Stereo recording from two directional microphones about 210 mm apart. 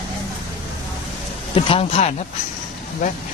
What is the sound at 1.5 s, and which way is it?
Speech, 25° left (ahead or behind).